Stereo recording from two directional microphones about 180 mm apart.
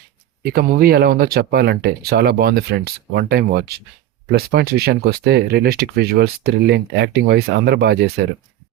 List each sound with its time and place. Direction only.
0.4 s speech: 55° right (ahead or behind)